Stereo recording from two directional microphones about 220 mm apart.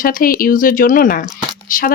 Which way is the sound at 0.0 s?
40° left (ahead or behind).